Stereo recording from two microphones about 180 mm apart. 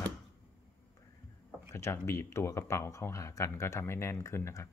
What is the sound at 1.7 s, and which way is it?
Speech, 15° left (ahead or behind).